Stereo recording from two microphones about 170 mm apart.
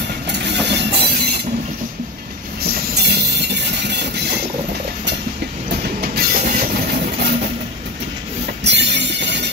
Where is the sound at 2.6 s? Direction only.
80° right.